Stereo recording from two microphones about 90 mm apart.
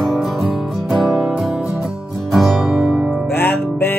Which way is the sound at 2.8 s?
20° right (ahead or behind).